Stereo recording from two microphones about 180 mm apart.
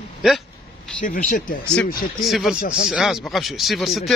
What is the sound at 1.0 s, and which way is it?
Speech, 50° left (ahead or behind).